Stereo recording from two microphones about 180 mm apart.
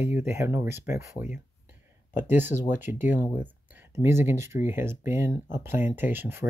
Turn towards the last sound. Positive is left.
turn(degrees=-10)  # may be behind; listen again after turning